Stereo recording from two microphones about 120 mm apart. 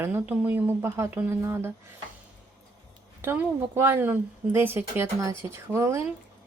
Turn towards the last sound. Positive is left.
turn(degrees=-25)  # may be behind; listen again after turning